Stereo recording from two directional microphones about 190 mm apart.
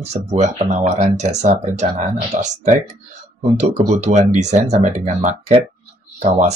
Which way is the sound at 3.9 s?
35° right (ahead or behind).